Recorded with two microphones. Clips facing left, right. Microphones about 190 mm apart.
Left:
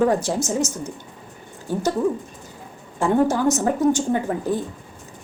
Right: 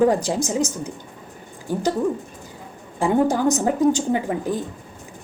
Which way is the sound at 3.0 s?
15° right (ahead or behind).